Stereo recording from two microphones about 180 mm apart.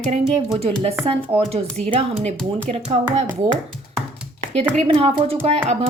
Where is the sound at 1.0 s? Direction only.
30° right (ahead or behind).